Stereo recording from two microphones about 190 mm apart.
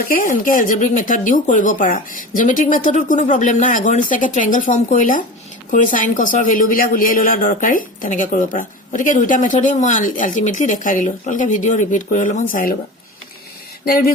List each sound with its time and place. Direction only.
0.0 s a man's voice: 45° left (ahead or behind)
13.8 s a man's voice: 50° left (ahead or behind)